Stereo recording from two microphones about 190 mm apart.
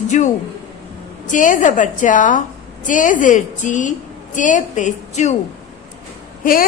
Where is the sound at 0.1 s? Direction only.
40° left (ahead or behind).